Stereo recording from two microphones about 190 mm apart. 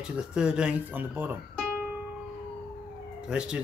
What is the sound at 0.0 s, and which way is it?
Speech, 5° right (ahead or behind).